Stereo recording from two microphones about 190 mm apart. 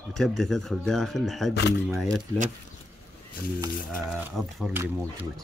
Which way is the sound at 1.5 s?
60° left (ahead or behind).